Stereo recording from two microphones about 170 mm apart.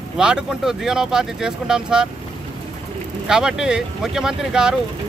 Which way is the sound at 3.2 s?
5° right (ahead or behind).